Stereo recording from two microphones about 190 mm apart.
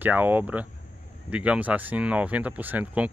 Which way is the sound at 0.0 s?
10° right (ahead or behind).